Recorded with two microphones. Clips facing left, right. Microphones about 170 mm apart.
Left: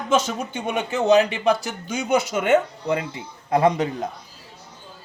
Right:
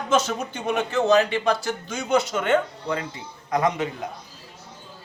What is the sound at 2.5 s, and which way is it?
Speech, 20° left (ahead or behind).